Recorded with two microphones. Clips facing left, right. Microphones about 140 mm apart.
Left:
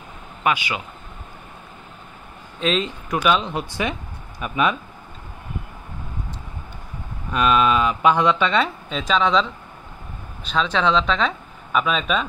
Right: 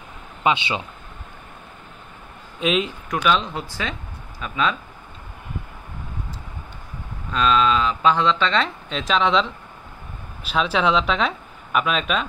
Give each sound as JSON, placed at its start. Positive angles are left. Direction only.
{"t": 0.4, "sound": "speech", "side_deg": -25}
{"t": 2.6, "sound": "speech", "side_deg": -10}
{"t": 3.1, "sound": "speech", "side_deg": 5}
{"t": 3.5, "sound": "speech", "side_deg": 20}
{"t": 7.2, "sound": "speech", "side_deg": 15}